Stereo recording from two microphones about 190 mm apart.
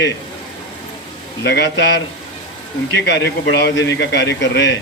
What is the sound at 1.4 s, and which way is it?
Speech, 65° left (ahead or behind).